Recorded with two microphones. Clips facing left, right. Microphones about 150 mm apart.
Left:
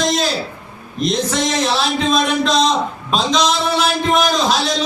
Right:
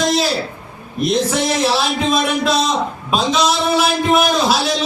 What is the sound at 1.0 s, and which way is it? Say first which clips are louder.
A man's voice: right 2 dB; 10° right (ahead or behind).